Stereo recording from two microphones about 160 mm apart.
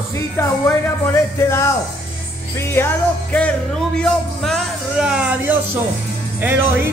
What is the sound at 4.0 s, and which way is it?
Speech, centre (ahead or behind).